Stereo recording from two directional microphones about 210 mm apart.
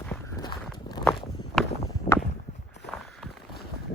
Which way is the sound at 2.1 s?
40° left (ahead or behind).